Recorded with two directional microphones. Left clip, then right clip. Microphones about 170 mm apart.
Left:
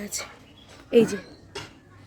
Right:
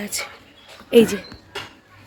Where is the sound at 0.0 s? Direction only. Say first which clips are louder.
Right 6 dB; centre (ahead or behind).